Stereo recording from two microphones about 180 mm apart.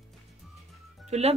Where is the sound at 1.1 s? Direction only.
35° right (ahead or behind).